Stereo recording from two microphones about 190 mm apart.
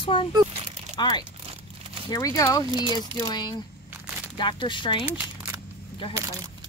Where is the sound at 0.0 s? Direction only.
30° left (ahead or behind).